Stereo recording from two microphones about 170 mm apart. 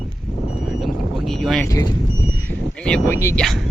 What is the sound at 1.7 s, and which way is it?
Speech, 20° left (ahead or behind).